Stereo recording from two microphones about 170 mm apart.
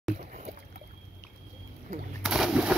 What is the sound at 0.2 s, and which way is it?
Boat, 45° right (ahead or behind).